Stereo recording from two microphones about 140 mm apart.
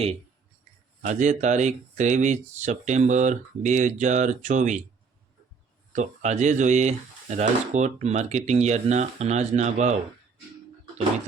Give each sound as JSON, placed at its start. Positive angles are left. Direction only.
{"t": 1.0, "sound": "speech", "side_deg": -60}
{"t": 5.9, "sound": "speech", "side_deg": -60}